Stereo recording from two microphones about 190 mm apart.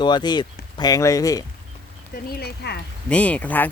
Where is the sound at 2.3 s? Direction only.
60° left (ahead or behind).